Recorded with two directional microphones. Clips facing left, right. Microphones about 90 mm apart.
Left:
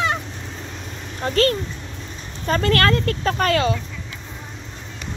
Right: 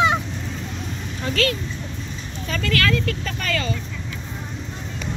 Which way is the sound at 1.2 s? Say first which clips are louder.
Left 4 dB; 45° left (ahead or behind).